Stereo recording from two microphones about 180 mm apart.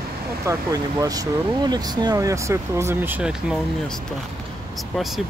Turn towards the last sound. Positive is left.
turn(degrees=-5)  # may be behind; listen again after turning